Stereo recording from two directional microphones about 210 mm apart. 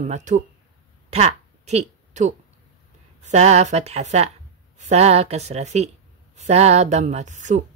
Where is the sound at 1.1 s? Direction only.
30° right (ahead or behind).